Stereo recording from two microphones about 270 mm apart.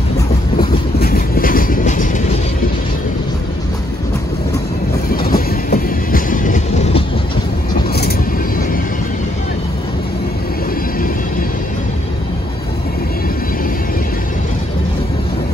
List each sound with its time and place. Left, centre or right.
0.9 s train: left
5.1 s train: left